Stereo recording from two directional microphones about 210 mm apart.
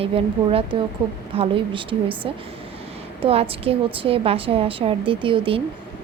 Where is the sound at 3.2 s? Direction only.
25° right (ahead or behind).